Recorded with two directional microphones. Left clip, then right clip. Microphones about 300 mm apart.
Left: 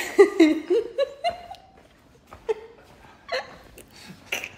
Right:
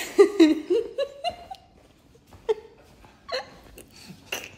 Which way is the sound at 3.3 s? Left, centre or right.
Centre.